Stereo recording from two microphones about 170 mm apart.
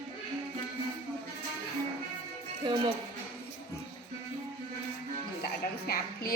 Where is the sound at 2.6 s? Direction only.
30° right (ahead or behind).